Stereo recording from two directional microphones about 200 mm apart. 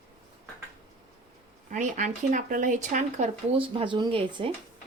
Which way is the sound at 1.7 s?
35° right (ahead or behind).